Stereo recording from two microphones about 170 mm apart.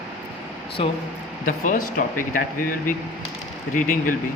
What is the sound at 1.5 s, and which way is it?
Speech, 50° left (ahead or behind).